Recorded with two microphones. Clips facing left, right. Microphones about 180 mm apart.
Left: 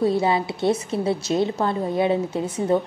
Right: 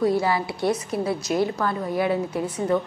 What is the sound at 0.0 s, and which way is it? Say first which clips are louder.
A woman's voice: left 1 dB; 25° left (ahead or behind).